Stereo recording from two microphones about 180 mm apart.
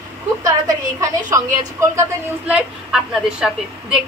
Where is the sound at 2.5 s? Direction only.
5° right (ahead or behind).